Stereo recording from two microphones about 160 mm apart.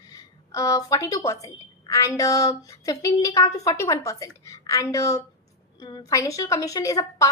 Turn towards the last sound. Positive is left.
turn(degrees=20)  # may be behind; listen again after turning